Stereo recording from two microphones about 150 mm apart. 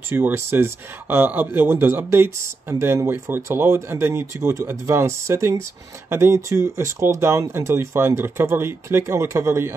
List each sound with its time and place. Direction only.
0.1 s speech: 15° right (ahead or behind)